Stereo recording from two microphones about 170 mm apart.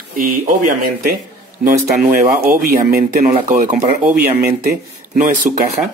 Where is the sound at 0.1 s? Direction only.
55° right (ahead or behind).